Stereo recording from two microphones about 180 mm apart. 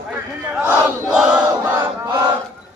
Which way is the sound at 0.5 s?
10° right (ahead or behind).